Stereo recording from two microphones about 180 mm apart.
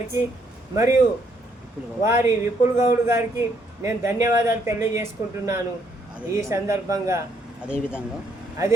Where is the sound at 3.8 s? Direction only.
15° right (ahead or behind).